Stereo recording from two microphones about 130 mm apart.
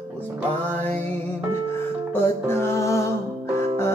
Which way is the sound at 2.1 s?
15° left (ahead or behind).